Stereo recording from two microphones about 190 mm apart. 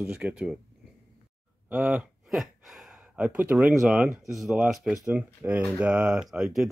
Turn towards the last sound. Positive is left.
turn(degrees=0)  # may be behind; listen again after turning